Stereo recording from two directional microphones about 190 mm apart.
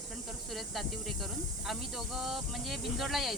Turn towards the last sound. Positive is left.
turn(degrees=0)  # may be behind; listen again after turning